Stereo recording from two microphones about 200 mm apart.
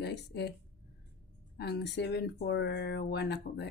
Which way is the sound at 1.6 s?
55° left (ahead or behind).